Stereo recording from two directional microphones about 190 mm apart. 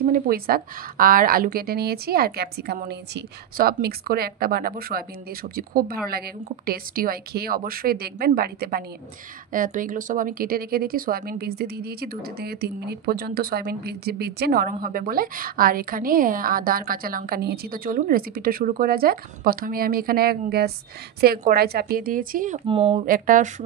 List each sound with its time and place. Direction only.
0.0 s speech: 50° right (ahead or behind)
22.7 s speech: 30° right (ahead or behind)
23.0 s speech: 45° right (ahead or behind)